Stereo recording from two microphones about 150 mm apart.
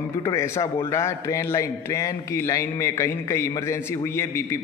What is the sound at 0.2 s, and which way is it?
A man's voice, 20° left (ahead or behind).